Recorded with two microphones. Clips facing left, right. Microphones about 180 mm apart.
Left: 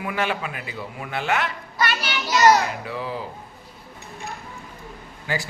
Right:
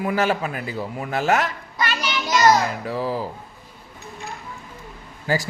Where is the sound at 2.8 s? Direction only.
40° right (ahead or behind).